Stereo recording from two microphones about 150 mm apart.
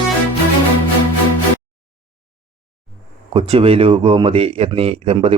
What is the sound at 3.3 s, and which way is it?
Speech, 40° right (ahead or behind).